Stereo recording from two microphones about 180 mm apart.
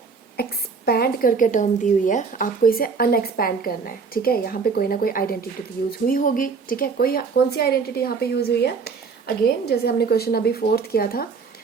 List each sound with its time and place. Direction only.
0.9 s a woman's voice: 60° left (ahead or behind)